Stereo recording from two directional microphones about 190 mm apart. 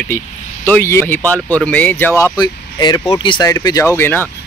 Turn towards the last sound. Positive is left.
turn(degrees=10)  # may be behind; listen again after turning